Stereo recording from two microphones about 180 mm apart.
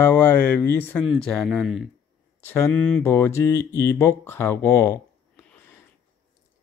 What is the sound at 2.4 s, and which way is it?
Speech, 10° left (ahead or behind).